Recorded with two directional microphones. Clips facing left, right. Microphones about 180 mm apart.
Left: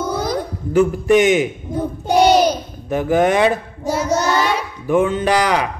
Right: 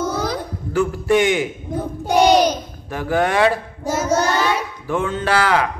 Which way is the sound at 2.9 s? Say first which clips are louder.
Left 4 dB; 20° left (ahead or behind).